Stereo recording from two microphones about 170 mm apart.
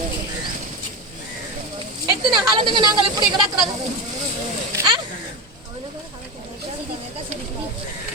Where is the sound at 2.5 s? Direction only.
25° right (ahead or behind).